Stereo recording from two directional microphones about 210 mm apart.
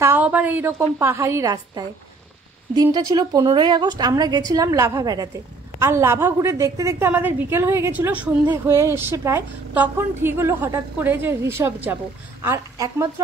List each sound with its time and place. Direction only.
0.0 s a woman's voice: 10° right (ahead or behind)